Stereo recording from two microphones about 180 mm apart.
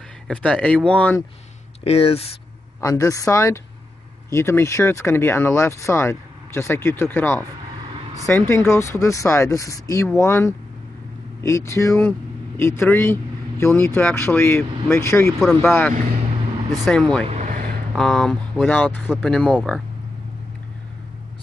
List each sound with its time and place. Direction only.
0.3 s speech: 5° left (ahead or behind)
1.9 s speech: 35° left (ahead or behind)
2.8 s speech: 20° left (ahead or behind)
17.3 s vehicle: 40° right (ahead or behind)
17.9 s speech: centre (ahead or behind)